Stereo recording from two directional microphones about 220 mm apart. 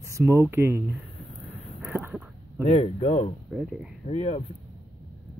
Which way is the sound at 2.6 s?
25° left (ahead or behind).